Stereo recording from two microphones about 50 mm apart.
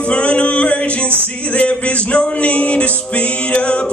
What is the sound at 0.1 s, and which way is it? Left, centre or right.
Music, left.